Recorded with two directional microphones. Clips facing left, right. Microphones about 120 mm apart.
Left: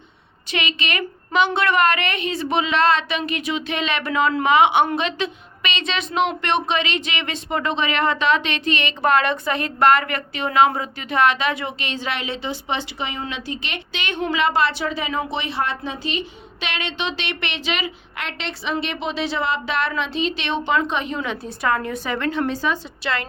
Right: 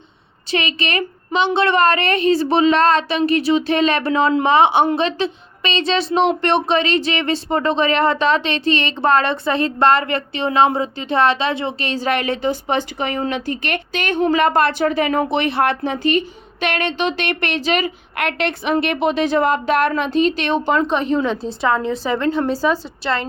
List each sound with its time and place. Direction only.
0.5 s a woman's voice: 35° right (ahead or behind)
21.2 s a woman's voice: 25° right (ahead or behind)